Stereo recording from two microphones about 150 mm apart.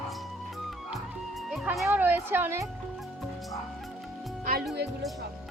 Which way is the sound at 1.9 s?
15° right (ahead or behind).